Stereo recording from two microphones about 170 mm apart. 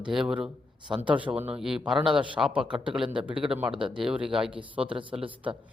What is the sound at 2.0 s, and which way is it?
Speech, 30° right (ahead or behind).